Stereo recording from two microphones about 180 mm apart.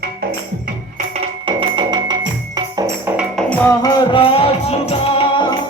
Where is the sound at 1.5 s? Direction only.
30° right (ahead or behind).